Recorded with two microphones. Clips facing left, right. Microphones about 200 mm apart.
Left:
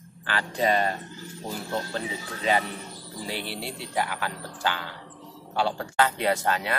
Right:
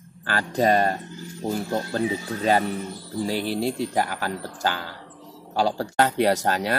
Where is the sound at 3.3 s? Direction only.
40° right (ahead or behind).